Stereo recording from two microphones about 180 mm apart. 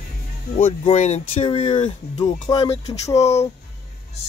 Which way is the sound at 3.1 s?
35° left (ahead or behind).